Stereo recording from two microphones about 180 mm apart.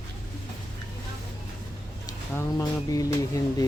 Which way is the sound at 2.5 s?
15° left (ahead or behind).